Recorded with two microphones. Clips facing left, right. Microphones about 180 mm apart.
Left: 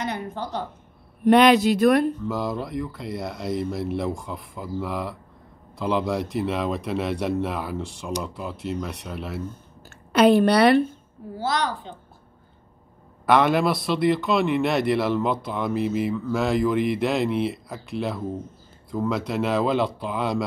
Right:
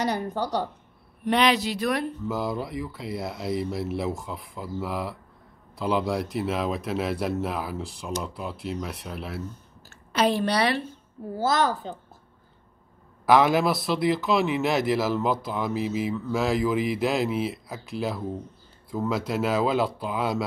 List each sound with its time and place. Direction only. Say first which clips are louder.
0.0 s speech: right 3 dB; 35° right (ahead or behind)
1.2 s speech: left 7 dB; 50° left (ahead or behind)
2.2 s a man's voice: left 1 dB; centre (ahead or behind)
10.1 s speech: left 7 dB; 60° left (ahead or behind)
11.3 s a woman's voice: right 2 dB; 45° right (ahead or behind)
13.2 s a man's voice: even; centre (ahead or behind)